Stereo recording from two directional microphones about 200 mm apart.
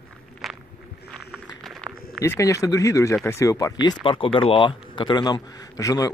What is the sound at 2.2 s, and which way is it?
Speech, 15° left (ahead or behind).